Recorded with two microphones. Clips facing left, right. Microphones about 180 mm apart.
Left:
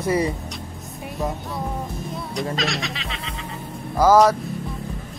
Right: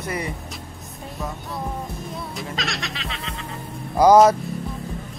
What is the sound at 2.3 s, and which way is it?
Music, centre (ahead or behind).